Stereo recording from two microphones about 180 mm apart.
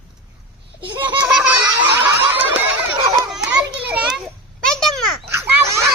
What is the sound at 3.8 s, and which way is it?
Children playing, 5° right (ahead or behind).